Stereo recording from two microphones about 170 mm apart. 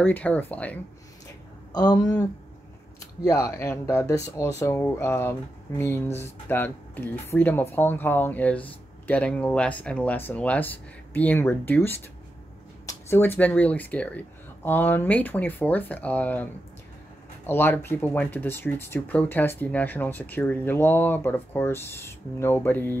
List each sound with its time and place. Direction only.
0.0 s speech: 10° left (ahead or behind)
1.7 s speech: 25° left (ahead or behind)
3.3 s speech: 15° left (ahead or behind)
17.5 s speech: 15° left (ahead or behind)